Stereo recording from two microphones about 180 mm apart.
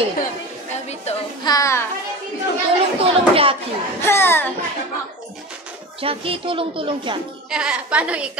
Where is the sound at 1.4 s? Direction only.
20° left (ahead or behind).